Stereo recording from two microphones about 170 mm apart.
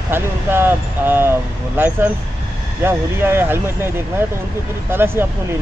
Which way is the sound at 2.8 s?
15° right (ahead or behind).